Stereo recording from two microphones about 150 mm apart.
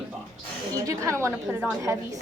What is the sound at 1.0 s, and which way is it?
Speech, 20° right (ahead or behind).